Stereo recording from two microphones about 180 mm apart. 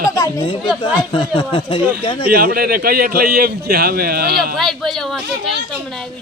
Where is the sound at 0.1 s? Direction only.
15° left (ahead or behind).